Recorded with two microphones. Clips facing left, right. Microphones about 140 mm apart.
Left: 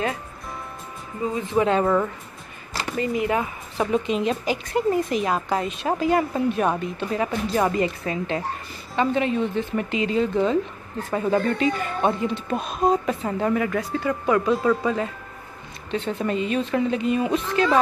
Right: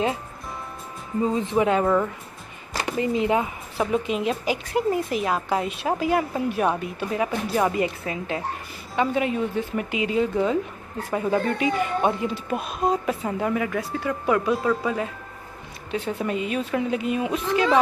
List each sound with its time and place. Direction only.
1.2 s speech: 30° right (ahead or behind)
1.6 s speech: 5° right (ahead or behind)
2.7 s speech: 15° right (ahead or behind)
3.7 s speech: 5° right (ahead or behind)